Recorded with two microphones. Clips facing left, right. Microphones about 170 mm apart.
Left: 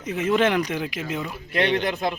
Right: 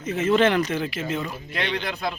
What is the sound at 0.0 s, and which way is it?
Speech, 15° left (ahead or behind).